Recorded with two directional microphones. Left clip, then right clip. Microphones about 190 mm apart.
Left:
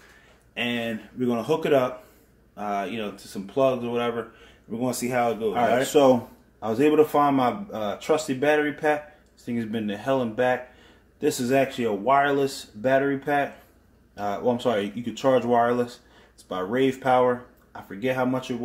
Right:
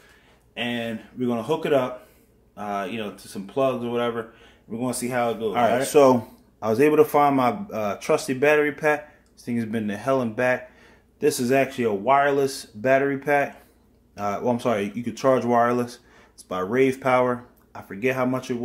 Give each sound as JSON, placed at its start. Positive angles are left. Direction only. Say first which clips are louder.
{"t": 0.6, "sound": "speech", "louder": "left 1 dB", "side_deg": 0}
{"t": 5.5, "sound": "a man's voice", "louder": "right 2 dB", "side_deg": -30}